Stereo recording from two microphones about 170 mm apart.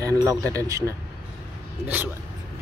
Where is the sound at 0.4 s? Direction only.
10° left (ahead or behind).